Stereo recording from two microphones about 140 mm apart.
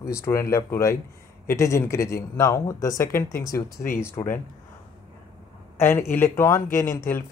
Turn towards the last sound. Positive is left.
turn(degrees=20)  # may be behind; listen again after turning